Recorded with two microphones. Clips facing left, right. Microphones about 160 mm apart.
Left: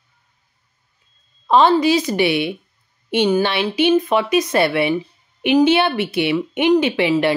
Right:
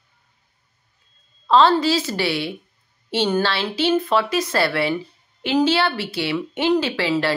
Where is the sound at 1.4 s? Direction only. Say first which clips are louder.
Left 2 dB; 15° left (ahead or behind).